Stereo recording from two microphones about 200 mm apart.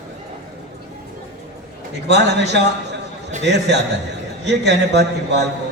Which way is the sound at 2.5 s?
60° right (ahead or behind).